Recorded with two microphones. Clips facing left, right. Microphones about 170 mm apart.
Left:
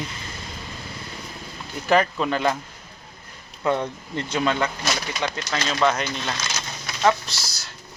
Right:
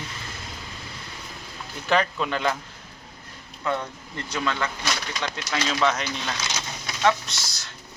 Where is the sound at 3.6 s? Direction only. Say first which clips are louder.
Left 5 dB; 20° left (ahead or behind).